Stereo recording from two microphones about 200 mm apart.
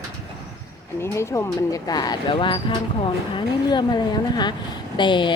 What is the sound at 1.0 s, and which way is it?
A woman's voice, 15° left (ahead or behind).